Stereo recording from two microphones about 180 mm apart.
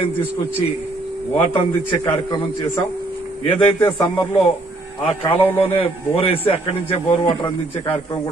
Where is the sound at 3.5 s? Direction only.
30° left (ahead or behind).